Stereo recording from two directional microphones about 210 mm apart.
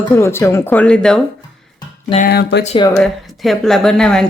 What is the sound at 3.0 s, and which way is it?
A woman's voice, centre (ahead or behind).